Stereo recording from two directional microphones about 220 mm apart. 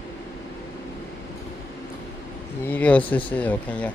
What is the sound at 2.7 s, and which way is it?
Speech, 5° left (ahead or behind).